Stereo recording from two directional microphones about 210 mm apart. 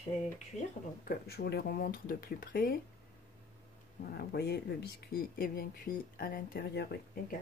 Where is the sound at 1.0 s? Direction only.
50° left (ahead or behind).